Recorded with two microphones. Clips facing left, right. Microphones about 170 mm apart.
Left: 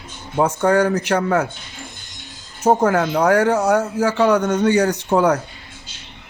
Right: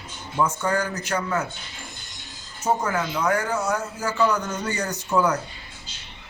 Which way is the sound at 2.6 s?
55° left (ahead or behind).